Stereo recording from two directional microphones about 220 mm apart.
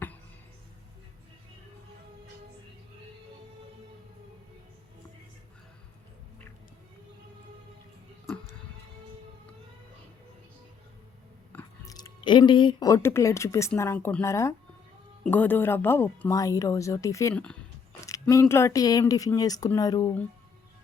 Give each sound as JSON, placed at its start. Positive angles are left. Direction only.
{"t": 11.5, "sound": "biting", "side_deg": 15}
{"t": 12.2, "sound": "speech", "side_deg": 20}